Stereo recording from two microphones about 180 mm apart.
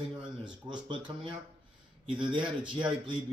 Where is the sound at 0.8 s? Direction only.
30° right (ahead or behind).